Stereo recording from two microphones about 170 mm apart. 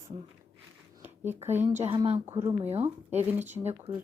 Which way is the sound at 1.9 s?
35° right (ahead or behind).